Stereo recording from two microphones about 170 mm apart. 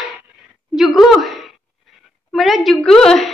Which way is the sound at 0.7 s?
Centre (ahead or behind).